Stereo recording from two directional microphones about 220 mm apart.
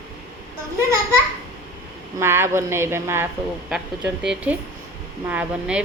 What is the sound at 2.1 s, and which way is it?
A woman's voice, 10° right (ahead or behind).